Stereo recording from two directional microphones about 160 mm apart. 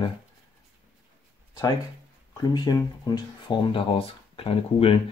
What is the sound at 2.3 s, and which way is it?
Speech, 25° left (ahead or behind).